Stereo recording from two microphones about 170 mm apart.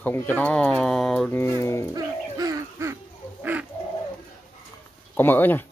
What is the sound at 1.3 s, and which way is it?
Speech, 15° left (ahead or behind).